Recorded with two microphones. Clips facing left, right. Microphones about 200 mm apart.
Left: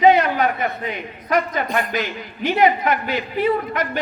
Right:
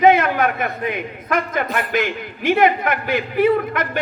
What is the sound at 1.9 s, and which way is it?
A man's voice, 50° right (ahead or behind).